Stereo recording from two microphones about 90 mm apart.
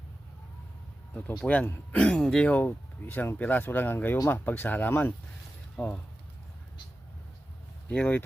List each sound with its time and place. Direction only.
1.1 s speech: 10° left (ahead or behind)
1.6 s speech: 25° left (ahead or behind)
2.0 s speech: 10° left (ahead or behind)
7.9 s speech: 20° left (ahead or behind)